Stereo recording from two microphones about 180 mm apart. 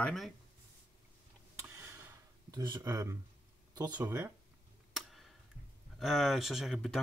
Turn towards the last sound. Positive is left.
turn(degrees=0)  # may be behind; listen again after turning